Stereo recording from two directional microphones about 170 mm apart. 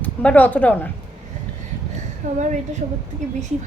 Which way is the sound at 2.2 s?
50° right (ahead or behind).